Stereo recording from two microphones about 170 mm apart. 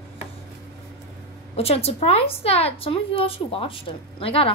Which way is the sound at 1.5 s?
35° left (ahead or behind).